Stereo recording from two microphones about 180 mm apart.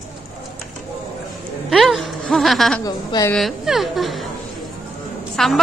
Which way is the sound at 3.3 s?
Centre (ahead or behind).